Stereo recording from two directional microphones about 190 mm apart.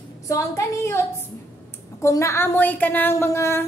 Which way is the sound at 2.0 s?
15° left (ahead or behind).